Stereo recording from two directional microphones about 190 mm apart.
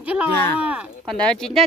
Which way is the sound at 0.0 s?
5° right (ahead or behind).